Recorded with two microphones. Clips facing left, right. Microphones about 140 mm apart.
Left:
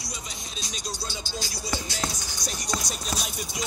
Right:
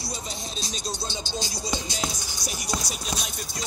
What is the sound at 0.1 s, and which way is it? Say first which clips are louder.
Music: right 5 dB; 30° right (ahead or behind).